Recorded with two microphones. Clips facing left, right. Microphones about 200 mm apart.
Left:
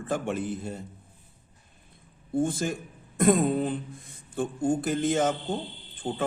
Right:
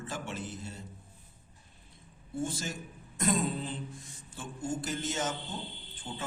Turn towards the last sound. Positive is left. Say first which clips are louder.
# left 10 dB
turn(degrees=90)